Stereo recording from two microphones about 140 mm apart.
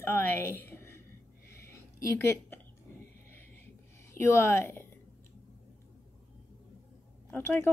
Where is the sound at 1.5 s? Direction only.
20° left (ahead or behind).